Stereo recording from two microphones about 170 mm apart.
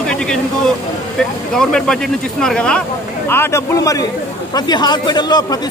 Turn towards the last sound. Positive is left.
turn(degrees=25)  # may be behind; listen again after turning